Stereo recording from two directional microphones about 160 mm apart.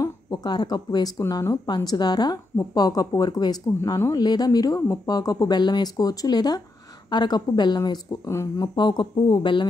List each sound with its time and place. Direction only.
0.0 s speech: 25° left (ahead or behind)